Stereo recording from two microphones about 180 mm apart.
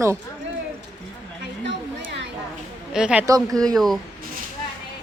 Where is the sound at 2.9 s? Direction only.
5° right (ahead or behind).